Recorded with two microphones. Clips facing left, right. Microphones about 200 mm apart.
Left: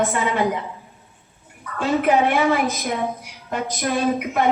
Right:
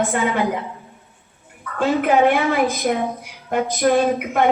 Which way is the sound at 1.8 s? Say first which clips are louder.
Right 2 dB; 55° right (ahead or behind).